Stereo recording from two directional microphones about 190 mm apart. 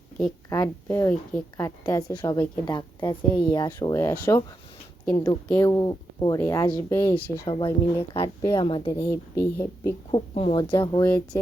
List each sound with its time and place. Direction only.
0.5 s a woman's voice: 15° left (ahead or behind)
10.1 s a woman's voice: 30° left (ahead or behind); by 11.3 s 10° left (ahead or behind)